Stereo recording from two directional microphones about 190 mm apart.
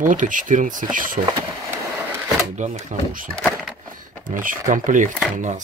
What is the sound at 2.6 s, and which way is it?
Speech, 40° right (ahead or behind).